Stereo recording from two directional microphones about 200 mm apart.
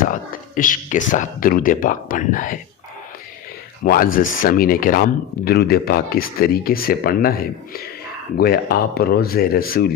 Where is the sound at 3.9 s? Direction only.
45° left (ahead or behind).